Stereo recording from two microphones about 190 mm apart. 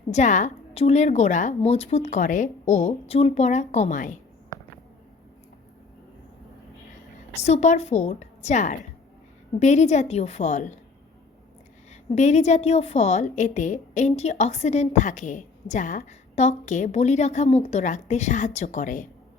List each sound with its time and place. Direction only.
0.1 s a woman's voice: 40° left (ahead or behind)
7.3 s a woman's voice: 35° left (ahead or behind)
12.1 s a woman's voice: 35° left (ahead or behind)